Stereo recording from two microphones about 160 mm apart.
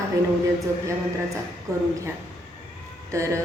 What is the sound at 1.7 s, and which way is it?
Speech, 15° right (ahead or behind).